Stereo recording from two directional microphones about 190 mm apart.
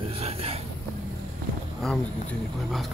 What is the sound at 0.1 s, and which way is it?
Vehicle, 30° right (ahead or behind).